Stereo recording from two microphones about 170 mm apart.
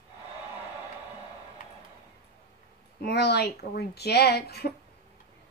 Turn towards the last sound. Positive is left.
turn(degrees=70)  # may be behind; listen again after turning